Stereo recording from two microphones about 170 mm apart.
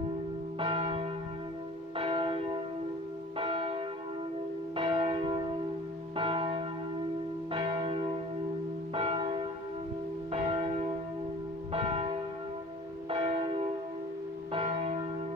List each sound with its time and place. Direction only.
0.6 s church bell: 30° right (ahead or behind)